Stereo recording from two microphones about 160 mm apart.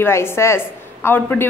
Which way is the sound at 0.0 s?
15° left (ahead or behind).